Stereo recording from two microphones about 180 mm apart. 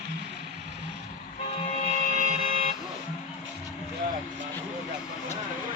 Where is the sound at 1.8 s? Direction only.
45° left (ahead or behind).